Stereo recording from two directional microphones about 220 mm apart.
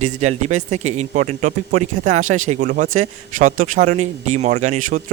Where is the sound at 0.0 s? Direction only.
30° right (ahead or behind).